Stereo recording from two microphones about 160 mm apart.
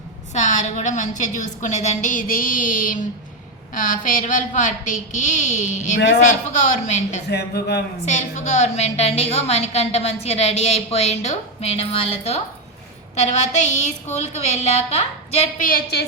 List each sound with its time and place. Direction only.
0.3 s a woman's voice: 50° left (ahead or behind)
7.3 s speech: 90° left
8.0 s a woman's voice: 45° left (ahead or behind)
15.6 s a woman's voice: 80° left